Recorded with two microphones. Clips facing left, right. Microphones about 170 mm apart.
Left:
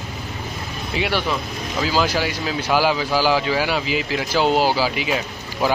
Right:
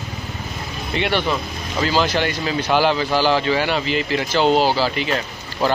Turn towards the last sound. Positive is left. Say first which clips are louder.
# right 1 dB
turn(degrees=10)  # may be behind; listen again after turning